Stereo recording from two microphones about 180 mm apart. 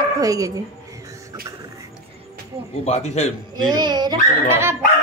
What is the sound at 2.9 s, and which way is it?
Speech, 40° left (ahead or behind).